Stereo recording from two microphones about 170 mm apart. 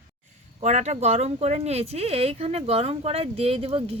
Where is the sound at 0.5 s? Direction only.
40° right (ahead or behind).